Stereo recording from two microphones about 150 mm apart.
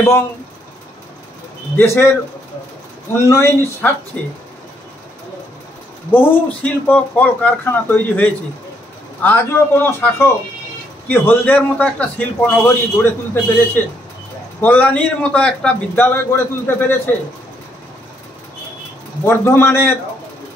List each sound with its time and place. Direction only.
1.8 s a man's voice: 15° left (ahead or behind)
3.1 s a man's voice: 15° left (ahead or behind)
6.1 s a man's voice: 15° left (ahead or behind)
14.6 s a man's voice: 10° left (ahead or behind)
19.2 s a man's voice: 15° left (ahead or behind)